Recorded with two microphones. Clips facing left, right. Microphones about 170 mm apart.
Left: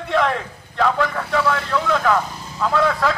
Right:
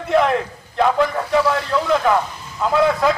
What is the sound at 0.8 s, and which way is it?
Speech, 25° right (ahead or behind).